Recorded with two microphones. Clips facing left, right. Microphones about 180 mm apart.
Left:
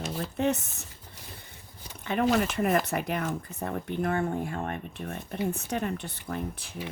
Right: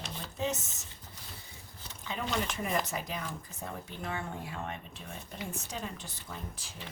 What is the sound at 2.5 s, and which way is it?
Speech, 60° left (ahead or behind).